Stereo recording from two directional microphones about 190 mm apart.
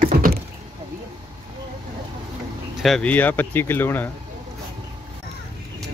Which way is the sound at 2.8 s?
5° left (ahead or behind).